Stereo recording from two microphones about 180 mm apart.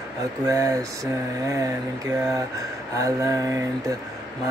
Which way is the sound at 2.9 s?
20° right (ahead or behind).